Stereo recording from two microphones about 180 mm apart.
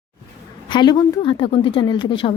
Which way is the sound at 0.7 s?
25° left (ahead or behind).